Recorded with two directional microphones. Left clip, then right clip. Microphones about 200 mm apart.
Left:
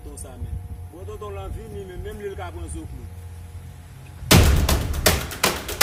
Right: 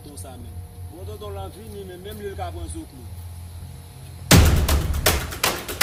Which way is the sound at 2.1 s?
20° right (ahead or behind).